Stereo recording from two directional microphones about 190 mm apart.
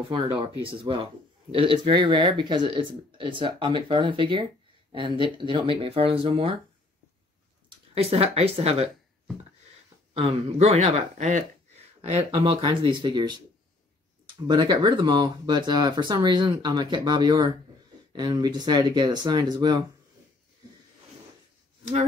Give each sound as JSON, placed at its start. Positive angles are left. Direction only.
{"t": 0.1, "sound": "speech", "side_deg": -25}
{"t": 7.9, "sound": "speech", "side_deg": -30}
{"t": 10.1, "sound": "speech", "side_deg": -35}
{"t": 12.3, "sound": "speech", "side_deg": -25}